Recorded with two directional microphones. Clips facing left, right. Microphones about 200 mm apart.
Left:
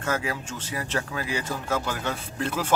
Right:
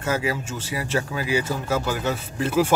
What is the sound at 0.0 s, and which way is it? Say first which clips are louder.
A man's voice: right 4 dB; 5° right (ahead or behind).